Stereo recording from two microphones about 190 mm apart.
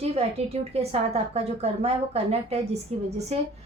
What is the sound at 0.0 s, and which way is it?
A woman's voice, 35° right (ahead or behind).